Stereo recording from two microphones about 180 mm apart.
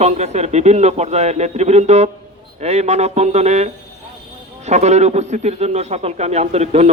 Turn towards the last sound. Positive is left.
turn(degrees=-35)  # may be behind; listen again after turning